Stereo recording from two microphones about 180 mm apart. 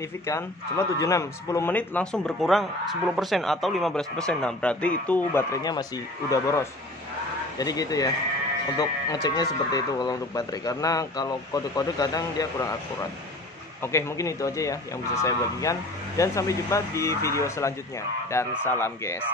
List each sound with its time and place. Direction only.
0.3 s speech: 15° left (ahead or behind)
13.9 s speech: 15° left (ahead or behind)